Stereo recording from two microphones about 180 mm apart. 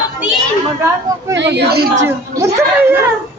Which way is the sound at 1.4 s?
65° right (ahead or behind).